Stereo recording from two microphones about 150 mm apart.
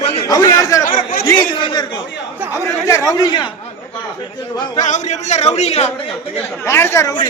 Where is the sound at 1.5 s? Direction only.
30° left (ahead or behind).